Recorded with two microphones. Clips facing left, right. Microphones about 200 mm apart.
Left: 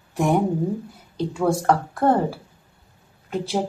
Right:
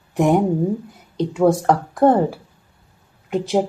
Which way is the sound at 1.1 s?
20° right (ahead or behind).